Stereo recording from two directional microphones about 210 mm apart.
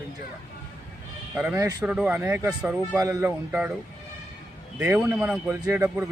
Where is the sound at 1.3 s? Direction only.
10° right (ahead or behind).